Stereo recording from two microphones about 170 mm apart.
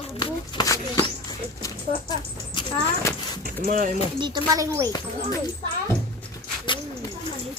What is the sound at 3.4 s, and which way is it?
Speech, 55° right (ahead or behind).